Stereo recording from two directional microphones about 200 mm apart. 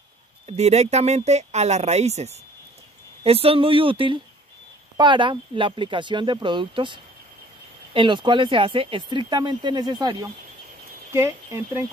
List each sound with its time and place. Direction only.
0.5 s speech: 35° right (ahead or behind); by 11.8 s 15° right (ahead or behind)